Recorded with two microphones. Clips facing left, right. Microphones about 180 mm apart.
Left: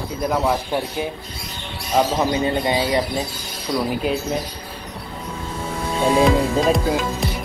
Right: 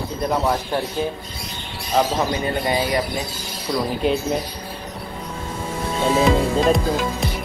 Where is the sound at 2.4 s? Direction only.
25° left (ahead or behind).